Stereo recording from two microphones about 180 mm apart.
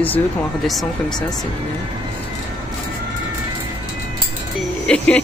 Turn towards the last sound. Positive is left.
turn(degrees=5)  # may be behind; listen again after turning